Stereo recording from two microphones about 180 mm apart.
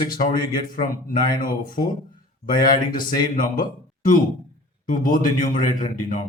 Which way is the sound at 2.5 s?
50° left (ahead or behind).